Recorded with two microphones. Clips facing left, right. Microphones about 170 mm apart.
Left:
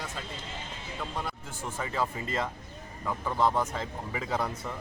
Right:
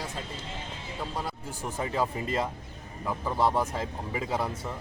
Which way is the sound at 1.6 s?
15° right (ahead or behind).